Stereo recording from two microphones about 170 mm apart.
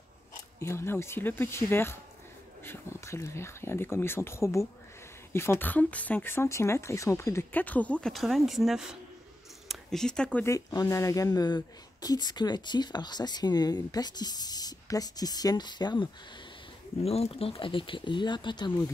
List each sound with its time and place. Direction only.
0.6 s speech: 15° left (ahead or behind)
17.0 s speech: 35° left (ahead or behind)